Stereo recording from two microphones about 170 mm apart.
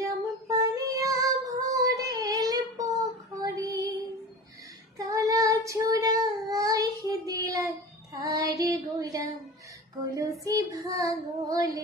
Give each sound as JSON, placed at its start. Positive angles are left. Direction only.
{"t": 0.5, "sound": "female singing", "side_deg": -20}
{"t": 4.9, "sound": "child singing", "side_deg": -20}